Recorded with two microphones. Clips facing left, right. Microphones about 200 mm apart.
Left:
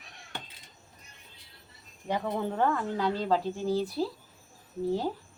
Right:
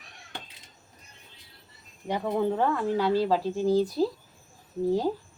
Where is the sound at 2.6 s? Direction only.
5° right (ahead or behind).